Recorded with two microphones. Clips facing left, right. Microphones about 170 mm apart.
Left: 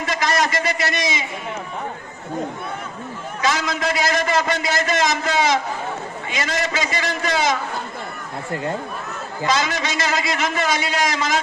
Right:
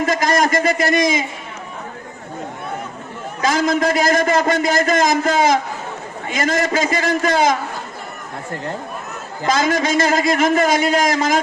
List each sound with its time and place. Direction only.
0.0 s a sound: 45° right (ahead or behind)
3.4 s a man's voice: 45° right (ahead or behind)
9.5 s a man's voice: 45° right (ahead or behind)